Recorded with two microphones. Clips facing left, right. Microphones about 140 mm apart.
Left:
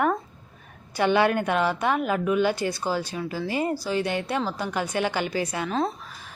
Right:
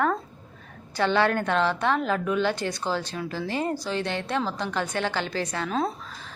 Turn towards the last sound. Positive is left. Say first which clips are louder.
# left 1 dB
turn(degrees=0)  # may be behind; listen again after turning